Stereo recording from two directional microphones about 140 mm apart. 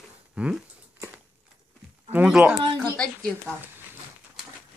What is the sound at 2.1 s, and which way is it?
Speech, 10° right (ahead or behind).